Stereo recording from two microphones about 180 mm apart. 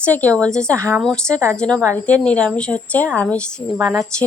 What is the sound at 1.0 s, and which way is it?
A woman's voice, 5° left (ahead or behind).